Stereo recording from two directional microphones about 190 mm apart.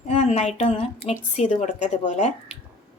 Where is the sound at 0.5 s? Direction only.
35° left (ahead or behind).